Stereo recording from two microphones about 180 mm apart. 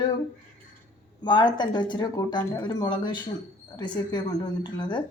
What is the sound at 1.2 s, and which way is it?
A woman's voice, 25° left (ahead or behind).